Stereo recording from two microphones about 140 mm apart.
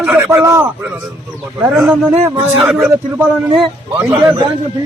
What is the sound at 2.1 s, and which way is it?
Speech, 50° right (ahead or behind).